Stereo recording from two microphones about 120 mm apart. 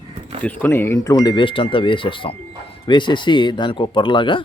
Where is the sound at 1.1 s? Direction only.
35° left (ahead or behind).